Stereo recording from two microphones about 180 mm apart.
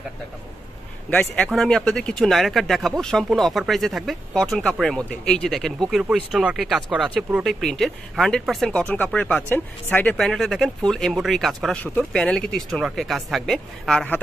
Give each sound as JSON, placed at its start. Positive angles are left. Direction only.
{"t": 1.1, "sound": "speech", "side_deg": 5}